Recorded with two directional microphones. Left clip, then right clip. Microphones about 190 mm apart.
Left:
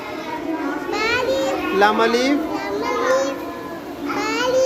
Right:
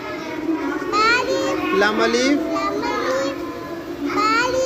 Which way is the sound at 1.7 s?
Centre (ahead or behind).